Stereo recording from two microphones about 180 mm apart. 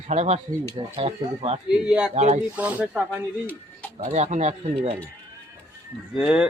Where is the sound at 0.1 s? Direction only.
35° right (ahead or behind).